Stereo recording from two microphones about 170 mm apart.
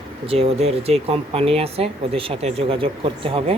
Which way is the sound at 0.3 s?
35° right (ahead or behind).